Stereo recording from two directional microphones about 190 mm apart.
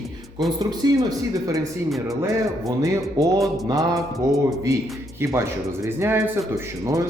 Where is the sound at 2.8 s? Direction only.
15° right (ahead or behind).